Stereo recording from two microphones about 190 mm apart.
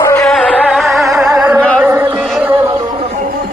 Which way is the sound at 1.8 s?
10° right (ahead or behind).